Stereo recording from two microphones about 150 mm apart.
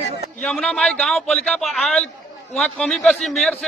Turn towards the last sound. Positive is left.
turn(degrees=0)  # may be behind; listen again after turning